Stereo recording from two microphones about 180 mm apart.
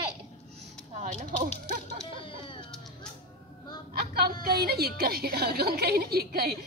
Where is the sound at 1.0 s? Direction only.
40° right (ahead or behind).